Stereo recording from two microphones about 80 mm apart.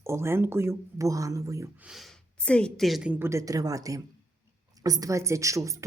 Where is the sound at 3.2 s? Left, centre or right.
Right.